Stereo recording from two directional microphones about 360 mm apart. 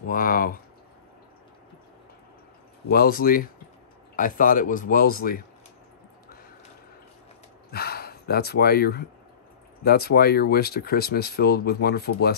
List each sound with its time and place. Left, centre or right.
0.0 s speech: left
2.9 s speech: left
7.7 s a sound: left
9.8 s speech: left